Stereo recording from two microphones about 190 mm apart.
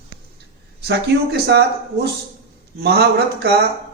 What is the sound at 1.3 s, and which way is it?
Speech, 60° right (ahead or behind).